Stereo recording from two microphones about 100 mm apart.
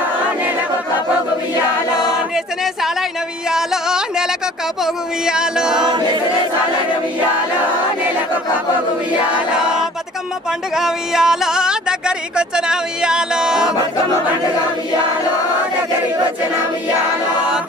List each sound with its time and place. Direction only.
2.3 s a sound: 5° right (ahead or behind)
3.4 s music: 5° right (ahead or behind)
5.2 s music: 5° right (ahead or behind)
5.8 s choir: 50° right (ahead or behind)
9.6 s choir: 10° right (ahead or behind)
10.8 s music: 5° right (ahead or behind)
12.4 s speech: 5° right (ahead or behind)